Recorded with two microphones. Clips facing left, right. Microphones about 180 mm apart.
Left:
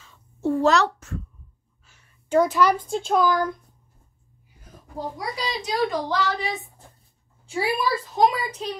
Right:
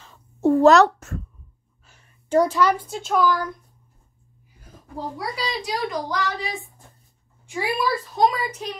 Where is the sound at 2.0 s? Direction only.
35° right (ahead or behind).